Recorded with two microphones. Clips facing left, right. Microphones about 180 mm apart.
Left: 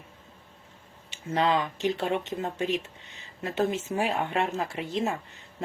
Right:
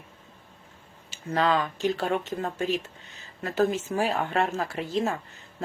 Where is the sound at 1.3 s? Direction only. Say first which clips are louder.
Right 1 dB; 20° left (ahead or behind).